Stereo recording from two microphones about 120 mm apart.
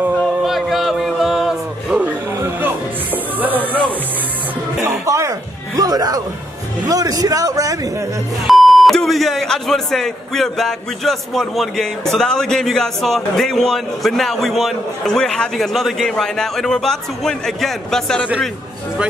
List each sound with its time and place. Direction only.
0.4 s music: centre (ahead or behind)
5.0 s music: 25° right (ahead or behind)
5.8 s a man's voice: 30° right (ahead or behind)
8.5 s speech: centre (ahead or behind)